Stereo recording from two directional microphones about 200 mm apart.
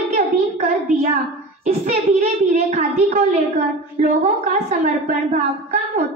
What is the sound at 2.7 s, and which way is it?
Speech, 30° right (ahead or behind).